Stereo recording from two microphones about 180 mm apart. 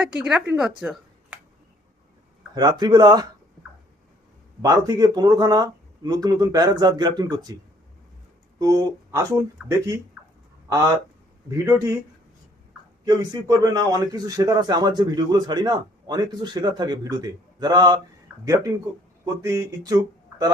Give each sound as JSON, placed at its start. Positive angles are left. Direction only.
{"t": 0.1, "sound": "speech", "side_deg": -5}
{"t": 0.8, "sound": "a sound", "side_deg": -5}
{"t": 2.6, "sound": "a man's voice", "side_deg": -20}
{"t": 4.6, "sound": "a man's voice", "side_deg": -20}
{"t": 8.5, "sound": "a man's voice", "side_deg": -20}
{"t": 11.4, "sound": "speech", "side_deg": -20}
{"t": 13.1, "sound": "a man's voice", "side_deg": -20}